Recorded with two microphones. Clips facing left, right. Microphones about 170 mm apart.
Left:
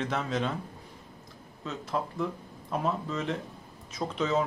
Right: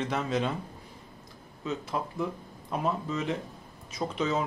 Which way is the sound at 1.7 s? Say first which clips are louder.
Even; 5° right (ahead or behind).